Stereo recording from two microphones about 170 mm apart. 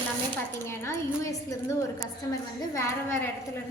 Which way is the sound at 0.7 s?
15° left (ahead or behind).